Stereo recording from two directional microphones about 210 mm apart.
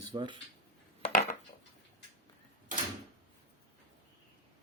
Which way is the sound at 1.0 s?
30° left (ahead or behind).